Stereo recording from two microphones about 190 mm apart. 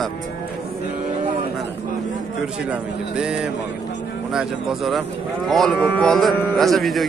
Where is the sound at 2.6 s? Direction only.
5° right (ahead or behind).